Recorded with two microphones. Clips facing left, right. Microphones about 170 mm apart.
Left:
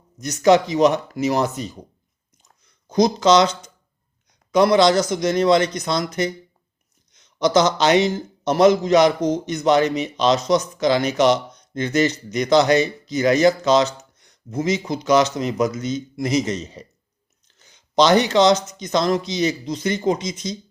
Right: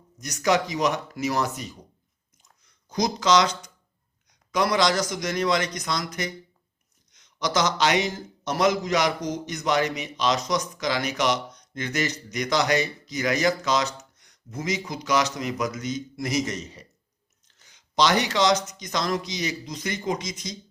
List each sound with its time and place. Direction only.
0.2 s a man's voice: 25° left (ahead or behind)
2.9 s a man's voice: 25° left (ahead or behind)